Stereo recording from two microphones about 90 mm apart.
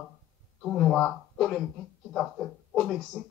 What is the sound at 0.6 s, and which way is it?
Speech, centre (ahead or behind).